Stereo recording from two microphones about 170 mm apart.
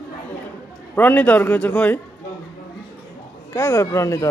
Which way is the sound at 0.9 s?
10° left (ahead or behind).